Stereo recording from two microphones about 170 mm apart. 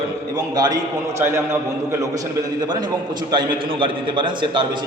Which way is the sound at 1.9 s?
20° right (ahead or behind).